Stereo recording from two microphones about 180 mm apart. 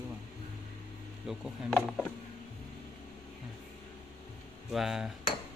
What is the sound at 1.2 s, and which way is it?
Speech, centre (ahead or behind).